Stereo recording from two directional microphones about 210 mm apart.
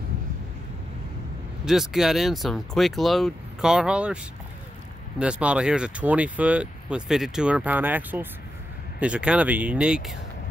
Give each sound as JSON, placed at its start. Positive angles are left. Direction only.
{"t": 1.7, "sound": "speech", "side_deg": 0}
{"t": 5.2, "sound": "speech", "side_deg": -5}